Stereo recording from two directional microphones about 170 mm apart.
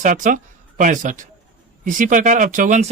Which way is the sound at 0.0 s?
50° right (ahead or behind).